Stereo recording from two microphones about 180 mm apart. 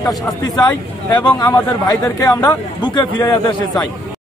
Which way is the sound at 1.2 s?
20° left (ahead or behind).